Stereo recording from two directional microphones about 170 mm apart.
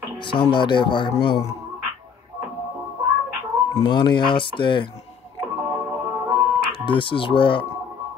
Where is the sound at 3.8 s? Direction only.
25° left (ahead or behind).